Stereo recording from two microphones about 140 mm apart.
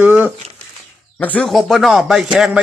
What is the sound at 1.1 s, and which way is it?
A man's voice, 10° left (ahead or behind).